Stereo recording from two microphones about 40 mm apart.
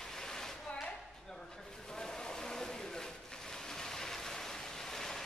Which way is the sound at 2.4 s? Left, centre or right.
Centre.